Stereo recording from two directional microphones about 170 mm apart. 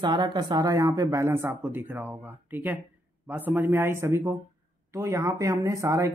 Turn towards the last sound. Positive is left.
turn(degrees=-20)  # may be behind; listen again after turning